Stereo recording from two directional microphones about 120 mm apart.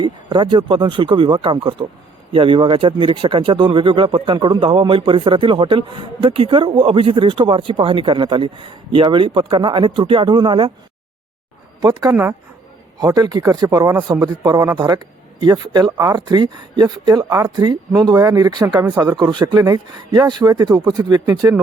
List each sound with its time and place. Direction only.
0.0 s speech: 40° right (ahead or behind)
11.8 s a man's voice: 30° right (ahead or behind)